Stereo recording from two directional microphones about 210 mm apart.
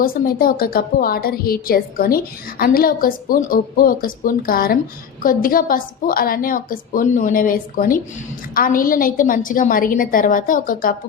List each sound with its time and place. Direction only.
0.0 s a woman's voice: 45° left (ahead or behind)